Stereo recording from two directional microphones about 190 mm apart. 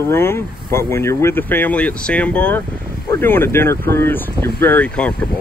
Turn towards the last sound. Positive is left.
turn(degrees=5)  # may be behind; listen again after turning